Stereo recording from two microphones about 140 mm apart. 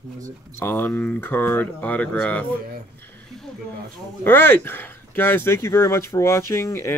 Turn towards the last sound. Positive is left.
turn(degrees=20)  # may be behind; listen again after turning